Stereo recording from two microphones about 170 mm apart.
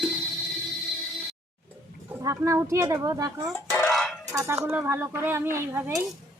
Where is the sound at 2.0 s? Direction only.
15° right (ahead or behind).